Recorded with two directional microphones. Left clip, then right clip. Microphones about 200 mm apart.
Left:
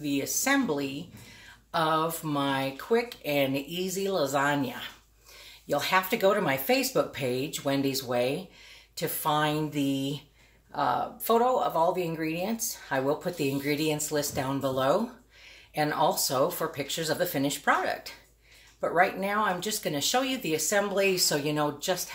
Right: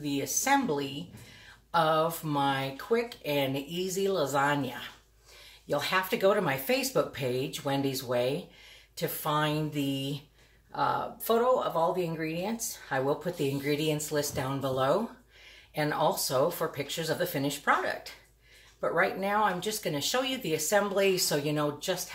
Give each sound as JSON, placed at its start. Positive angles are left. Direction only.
{"t": 0.0, "sound": "speech", "side_deg": 20}